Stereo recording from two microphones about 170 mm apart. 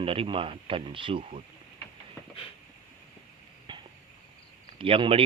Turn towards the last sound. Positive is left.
turn(degrees=-30)  # may be behind; listen again after turning